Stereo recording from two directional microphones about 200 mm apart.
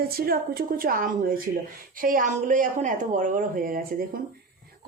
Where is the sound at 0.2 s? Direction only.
50° right (ahead or behind).